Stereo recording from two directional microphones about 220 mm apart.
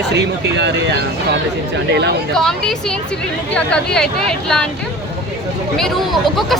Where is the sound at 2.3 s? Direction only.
Centre (ahead or behind).